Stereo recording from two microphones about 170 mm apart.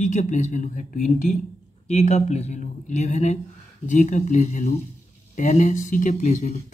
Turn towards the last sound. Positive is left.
turn(degrees=45)  # may be behind; listen again after turning